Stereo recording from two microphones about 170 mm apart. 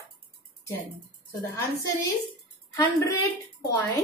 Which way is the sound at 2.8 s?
20° left (ahead or behind).